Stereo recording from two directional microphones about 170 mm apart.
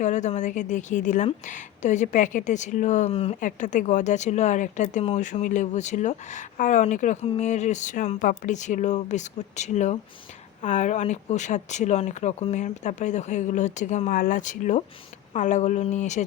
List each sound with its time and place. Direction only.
0.0 s speech: 45° left (ahead or behind)
3.4 s speech: 50° left (ahead or behind)